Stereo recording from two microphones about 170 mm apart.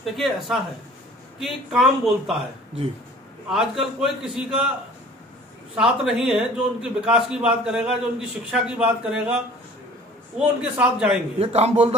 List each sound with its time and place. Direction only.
0.0 s a man's voice: centre (ahead or behind)
3.4 s a man's voice: 5° right (ahead or behind)
5.8 s a man's voice: 5° right (ahead or behind)
10.4 s a man's voice: 5° right (ahead or behind)
11.3 s a man's voice: 40° right (ahead or behind)